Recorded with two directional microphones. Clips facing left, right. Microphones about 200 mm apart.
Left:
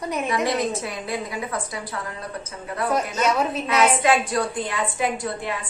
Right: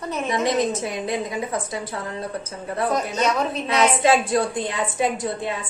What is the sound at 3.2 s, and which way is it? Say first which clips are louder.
Speech: left 1 dB; 5° left (ahead or behind).